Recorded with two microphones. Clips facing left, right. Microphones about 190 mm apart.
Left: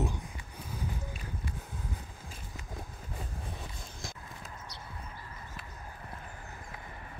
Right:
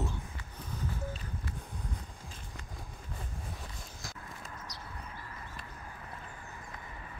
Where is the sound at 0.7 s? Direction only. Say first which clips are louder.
Right 1 dB; 10° left (ahead or behind).